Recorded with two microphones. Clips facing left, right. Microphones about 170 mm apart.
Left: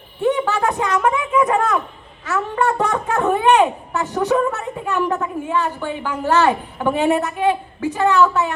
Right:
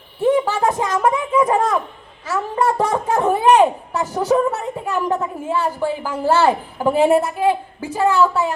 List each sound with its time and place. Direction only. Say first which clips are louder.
0.2 s speech: right 2 dB; 30° right (ahead or behind)